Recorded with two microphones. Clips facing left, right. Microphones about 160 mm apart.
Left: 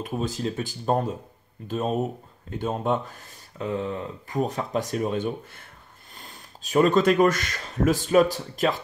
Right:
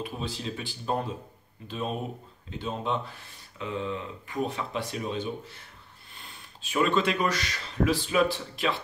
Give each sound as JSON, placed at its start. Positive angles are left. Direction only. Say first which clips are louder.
{"t": 0.0, "sound": "speech", "louder": "left 6 dB", "side_deg": 45}